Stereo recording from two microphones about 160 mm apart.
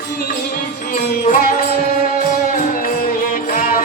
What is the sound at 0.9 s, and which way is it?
Music, 55° left (ahead or behind).